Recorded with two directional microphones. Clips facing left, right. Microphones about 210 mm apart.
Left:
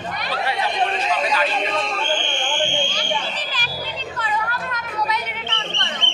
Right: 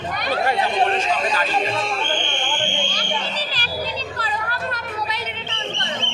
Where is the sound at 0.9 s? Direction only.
45° right (ahead or behind).